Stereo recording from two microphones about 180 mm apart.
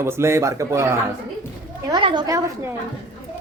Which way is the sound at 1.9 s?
25° right (ahead or behind).